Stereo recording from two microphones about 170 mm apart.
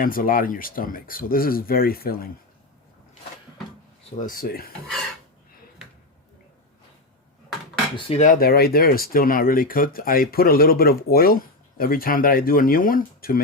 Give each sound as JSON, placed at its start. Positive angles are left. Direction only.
{"t": 0.0, "sound": "speech", "side_deg": 55}
{"t": 4.2, "sound": "speech", "side_deg": 55}
{"t": 7.9, "sound": "dishes", "side_deg": 40}
{"t": 8.4, "sound": "speech", "side_deg": 65}